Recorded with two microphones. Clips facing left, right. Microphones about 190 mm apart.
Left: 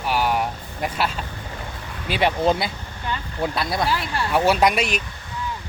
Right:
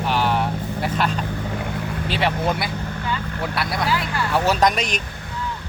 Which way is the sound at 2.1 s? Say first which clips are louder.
Left 3 dB; 20° left (ahead or behind).